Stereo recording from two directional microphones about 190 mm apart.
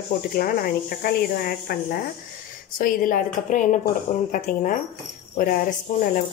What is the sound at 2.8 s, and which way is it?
Speech, 45° left (ahead or behind).